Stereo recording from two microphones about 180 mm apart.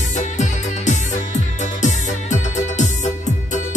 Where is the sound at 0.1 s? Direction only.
40° left (ahead or behind).